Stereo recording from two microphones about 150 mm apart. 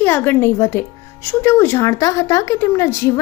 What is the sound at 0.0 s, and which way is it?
A woman's voice, 15° left (ahead or behind).